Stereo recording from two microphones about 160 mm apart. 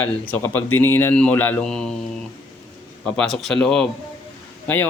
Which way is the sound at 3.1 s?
5° left (ahead or behind).